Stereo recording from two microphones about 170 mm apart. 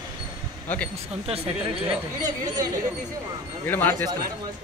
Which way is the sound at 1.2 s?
35° right (ahead or behind).